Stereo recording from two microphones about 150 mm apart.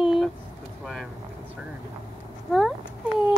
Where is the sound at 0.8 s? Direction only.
Centre (ahead or behind).